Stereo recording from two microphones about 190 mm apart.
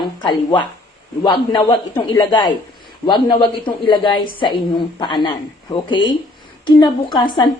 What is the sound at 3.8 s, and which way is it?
A woman's voice, 25° left (ahead or behind).